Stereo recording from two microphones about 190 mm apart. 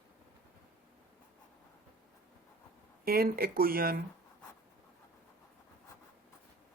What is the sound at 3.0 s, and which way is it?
Speech, 50° right (ahead or behind).